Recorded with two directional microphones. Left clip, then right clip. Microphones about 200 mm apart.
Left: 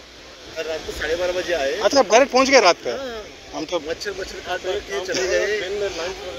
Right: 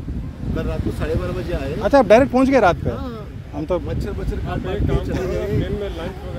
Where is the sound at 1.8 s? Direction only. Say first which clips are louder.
Right 3 dB; 10° right (ahead or behind).